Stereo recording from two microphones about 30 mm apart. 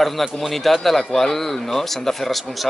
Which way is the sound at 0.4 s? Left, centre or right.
Centre.